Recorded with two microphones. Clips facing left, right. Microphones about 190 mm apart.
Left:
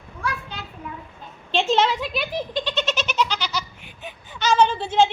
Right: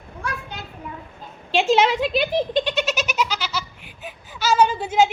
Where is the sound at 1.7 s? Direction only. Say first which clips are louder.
Right 4 dB; 15° right (ahead or behind).